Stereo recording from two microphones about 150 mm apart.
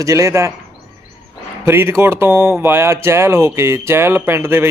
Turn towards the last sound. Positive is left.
turn(degrees=-15)  # may be behind; listen again after turning